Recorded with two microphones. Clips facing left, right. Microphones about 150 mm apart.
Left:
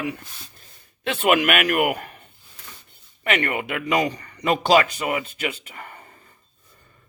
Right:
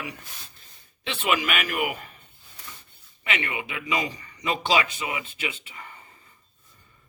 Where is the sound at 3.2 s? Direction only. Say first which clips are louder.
Left 7 dB; 50° left (ahead or behind).